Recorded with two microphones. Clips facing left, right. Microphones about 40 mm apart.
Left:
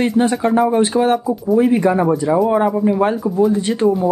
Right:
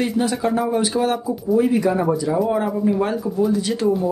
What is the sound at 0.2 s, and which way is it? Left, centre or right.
Speech, left.